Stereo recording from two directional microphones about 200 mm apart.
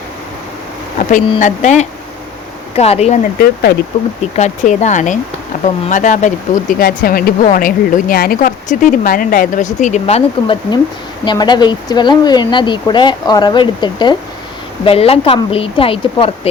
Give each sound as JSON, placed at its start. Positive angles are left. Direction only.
{"t": 0.9, "sound": "speech", "side_deg": 40}
{"t": 3.3, "sound": "speech", "side_deg": 50}
{"t": 4.4, "sound": "speech", "side_deg": 35}